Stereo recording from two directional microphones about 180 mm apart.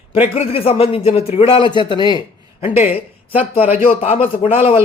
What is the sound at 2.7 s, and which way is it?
A man's voice, 35° left (ahead or behind).